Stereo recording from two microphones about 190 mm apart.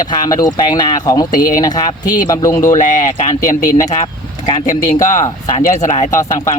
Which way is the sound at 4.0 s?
30° left (ahead or behind).